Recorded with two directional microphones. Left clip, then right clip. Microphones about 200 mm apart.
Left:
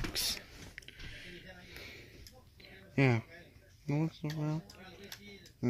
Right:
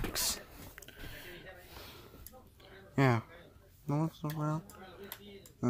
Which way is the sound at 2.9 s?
5° left (ahead or behind).